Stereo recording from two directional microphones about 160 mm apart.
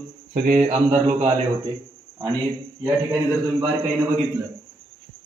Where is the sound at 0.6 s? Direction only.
45° right (ahead or behind).